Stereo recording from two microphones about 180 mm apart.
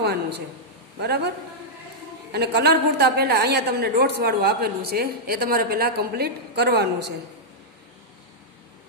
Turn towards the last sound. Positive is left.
turn(degrees=-65)  # may be behind; listen again after turning